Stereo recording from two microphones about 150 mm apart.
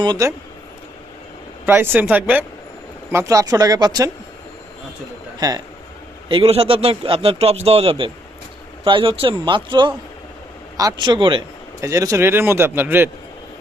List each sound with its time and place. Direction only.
0.0 s speech: 25° right (ahead or behind)
1.6 s a man's voice: 15° right (ahead or behind)
3.1 s speech: 20° right (ahead or behind)
5.4 s a man's voice: 25° right (ahead or behind)
6.2 s speech: 40° right (ahead or behind)
11.8 s a man's voice: 20° right (ahead or behind)